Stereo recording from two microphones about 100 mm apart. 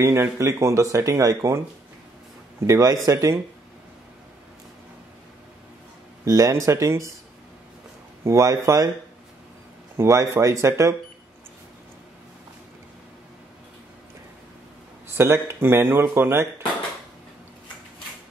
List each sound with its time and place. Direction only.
0.0 s speech: 30° right (ahead or behind)
2.6 s speech: 30° right (ahead or behind)
6.2 s speech: 35° right (ahead or behind)
8.2 s speech: 30° right (ahead or behind)
9.9 s speech: 30° right (ahead or behind)
15.1 s speech: 25° right (ahead or behind)